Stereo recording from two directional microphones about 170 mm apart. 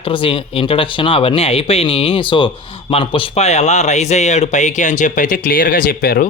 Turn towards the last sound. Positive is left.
turn(degrees=60)  # may be behind; listen again after turning